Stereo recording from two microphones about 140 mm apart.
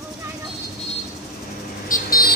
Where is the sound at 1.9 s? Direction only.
90° left.